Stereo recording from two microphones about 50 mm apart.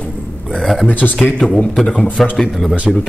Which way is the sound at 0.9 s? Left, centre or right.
Left.